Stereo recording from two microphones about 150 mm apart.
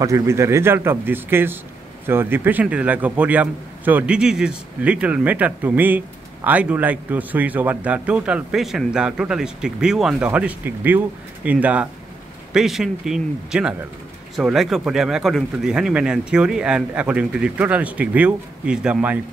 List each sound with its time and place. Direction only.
0.0 s a man's voice: 20° right (ahead or behind)